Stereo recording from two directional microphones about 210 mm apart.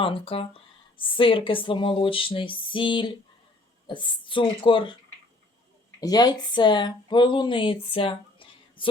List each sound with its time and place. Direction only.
0.0 s speech: 25° left (ahead or behind)
6.0 s speech: 20° left (ahead or behind)